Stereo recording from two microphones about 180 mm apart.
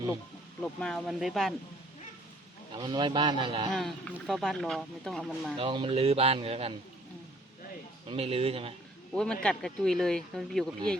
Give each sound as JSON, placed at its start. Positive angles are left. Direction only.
{"t": 0.6, "sound": "speech", "side_deg": 5}
{"t": 2.7, "sound": "a man's voice", "side_deg": -25}
{"t": 3.7, "sound": "speech", "side_deg": 0}
{"t": 5.5, "sound": "a man's voice", "side_deg": -30}
{"t": 8.0, "sound": "a man's voice", "side_deg": -30}
{"t": 9.1, "sound": "speech", "side_deg": 5}